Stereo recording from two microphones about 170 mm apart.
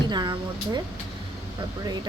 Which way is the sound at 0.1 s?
25° right (ahead or behind).